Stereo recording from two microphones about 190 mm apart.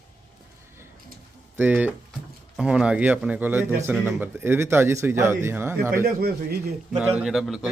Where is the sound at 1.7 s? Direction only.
5° right (ahead or behind).